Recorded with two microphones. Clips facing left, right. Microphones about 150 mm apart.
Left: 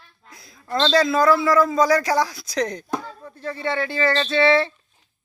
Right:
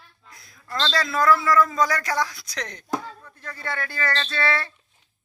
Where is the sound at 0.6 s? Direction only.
25° left (ahead or behind); by 2.8 s 40° left (ahead or behind).